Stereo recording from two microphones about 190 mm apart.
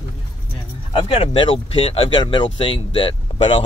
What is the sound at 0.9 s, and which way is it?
Speech, 30° left (ahead or behind).